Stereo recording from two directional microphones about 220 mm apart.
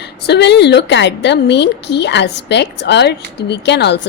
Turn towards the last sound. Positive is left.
turn(degrees=50)  # may be behind; listen again after turning